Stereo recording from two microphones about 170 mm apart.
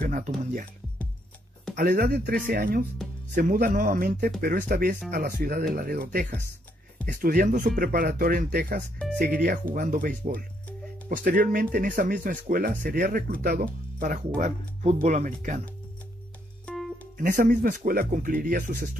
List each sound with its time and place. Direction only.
0.0 s speech: 50° right (ahead or behind)
1.8 s speech: 55° right (ahead or behind)
16.6 s music: 5° left (ahead or behind)
17.2 s speech: 50° right (ahead or behind)